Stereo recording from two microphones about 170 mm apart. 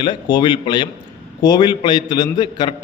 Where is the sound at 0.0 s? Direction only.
30° left (ahead or behind).